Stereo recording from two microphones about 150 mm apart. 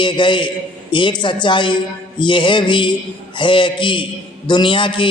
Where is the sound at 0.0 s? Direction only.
30° left (ahead or behind).